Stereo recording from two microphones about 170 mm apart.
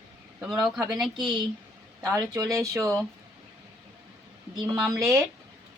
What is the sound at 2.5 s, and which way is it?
Speech, 20° right (ahead or behind).